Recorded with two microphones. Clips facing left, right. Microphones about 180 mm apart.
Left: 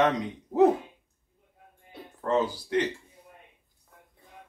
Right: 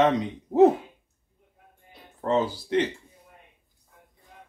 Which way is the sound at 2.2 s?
25° right (ahead or behind).